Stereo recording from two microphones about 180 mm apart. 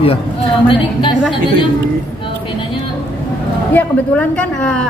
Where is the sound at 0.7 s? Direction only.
30° left (ahead or behind).